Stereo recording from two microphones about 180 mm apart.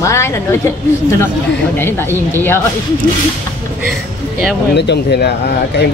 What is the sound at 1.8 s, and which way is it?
Speech, 10° left (ahead or behind).